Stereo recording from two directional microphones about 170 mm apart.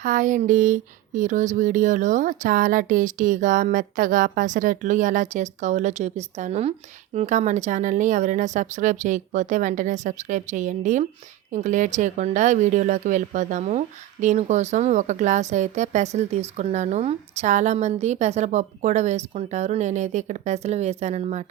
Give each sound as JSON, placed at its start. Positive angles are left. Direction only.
{"t": 0.0, "sound": "speech", "side_deg": -50}